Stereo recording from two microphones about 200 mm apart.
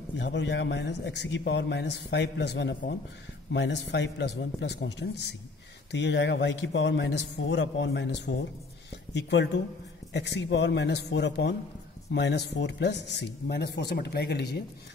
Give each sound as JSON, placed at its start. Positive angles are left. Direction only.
{"t": 0.2, "sound": "a man's voice", "side_deg": 60}